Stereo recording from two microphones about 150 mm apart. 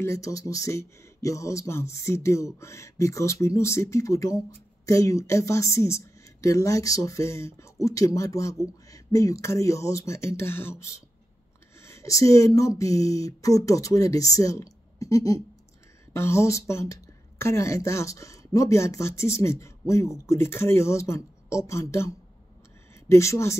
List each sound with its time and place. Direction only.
0.0 s a woman's voice: 20° left (ahead or behind)